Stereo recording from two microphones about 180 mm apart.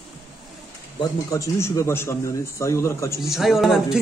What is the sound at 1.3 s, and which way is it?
A man's voice, 15° left (ahead or behind).